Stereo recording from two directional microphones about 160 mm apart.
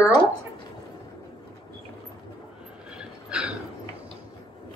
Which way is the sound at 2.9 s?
5° right (ahead or behind).